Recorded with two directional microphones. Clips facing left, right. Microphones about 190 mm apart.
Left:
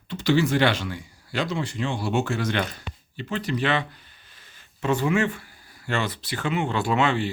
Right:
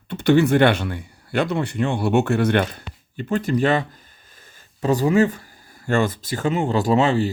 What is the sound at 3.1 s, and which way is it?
Speech, 50° right (ahead or behind).